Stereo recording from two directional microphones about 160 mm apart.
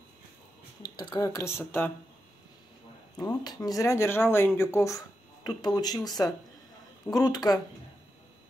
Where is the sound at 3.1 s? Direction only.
25° left (ahead or behind).